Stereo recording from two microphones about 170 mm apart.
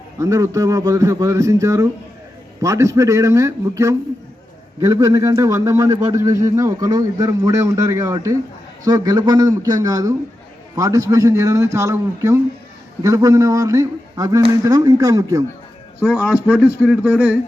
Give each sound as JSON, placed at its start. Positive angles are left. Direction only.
{"t": 0.2, "sound": "a man's voice", "side_deg": -20}
{"t": 16.0, "sound": "a man's voice", "side_deg": -5}